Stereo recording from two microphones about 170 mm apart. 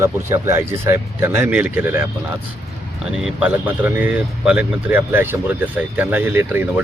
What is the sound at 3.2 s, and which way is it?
Speech, 10° right (ahead or behind).